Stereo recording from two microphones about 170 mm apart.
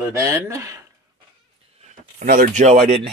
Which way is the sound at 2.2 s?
50° right (ahead or behind).